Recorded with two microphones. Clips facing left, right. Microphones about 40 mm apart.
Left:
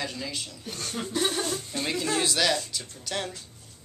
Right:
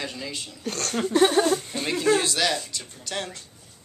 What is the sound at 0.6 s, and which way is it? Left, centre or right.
Speech, right.